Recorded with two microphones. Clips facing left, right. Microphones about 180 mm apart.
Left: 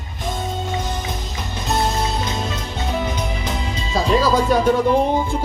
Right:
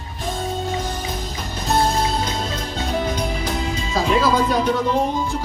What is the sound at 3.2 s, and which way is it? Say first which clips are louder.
Speech: right 2 dB; 25° left (ahead or behind).